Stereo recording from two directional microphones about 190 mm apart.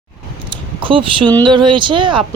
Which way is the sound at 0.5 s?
25° right (ahead or behind).